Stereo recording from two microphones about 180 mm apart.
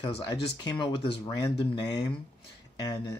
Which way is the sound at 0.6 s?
25° left (ahead or behind).